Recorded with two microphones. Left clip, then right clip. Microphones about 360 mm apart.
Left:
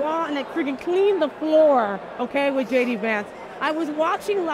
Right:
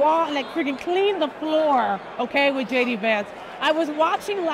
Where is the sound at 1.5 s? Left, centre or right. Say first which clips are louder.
Left 3 dB; centre.